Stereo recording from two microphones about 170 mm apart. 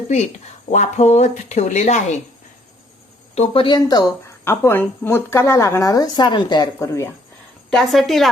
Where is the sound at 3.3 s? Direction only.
35° left (ahead or behind); by 7.1 s 20° left (ahead or behind).